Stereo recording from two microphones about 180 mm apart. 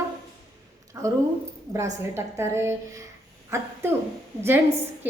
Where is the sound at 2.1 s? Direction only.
15° right (ahead or behind).